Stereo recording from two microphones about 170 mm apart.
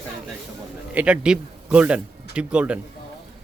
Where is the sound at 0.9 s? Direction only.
5° right (ahead or behind).